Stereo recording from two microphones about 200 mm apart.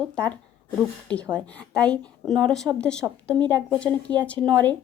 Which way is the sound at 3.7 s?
5° left (ahead or behind).